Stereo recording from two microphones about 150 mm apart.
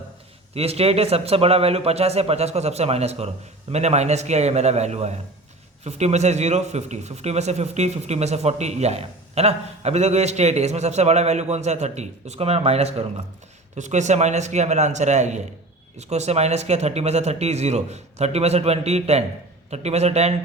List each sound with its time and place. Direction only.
0.5 s a man's voice: 45° right (ahead or behind)
13.7 s a man's voice: 55° right (ahead or behind)